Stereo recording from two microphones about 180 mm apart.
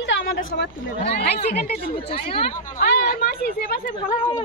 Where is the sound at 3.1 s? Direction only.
55° left (ahead or behind).